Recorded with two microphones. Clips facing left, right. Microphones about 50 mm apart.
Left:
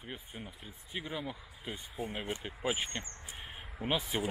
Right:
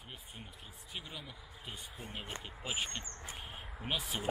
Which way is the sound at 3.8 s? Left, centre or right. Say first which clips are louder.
Left 5 dB; centre.